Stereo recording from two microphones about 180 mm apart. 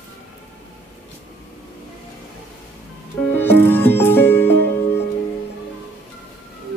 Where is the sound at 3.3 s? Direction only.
10° left (ahead or behind).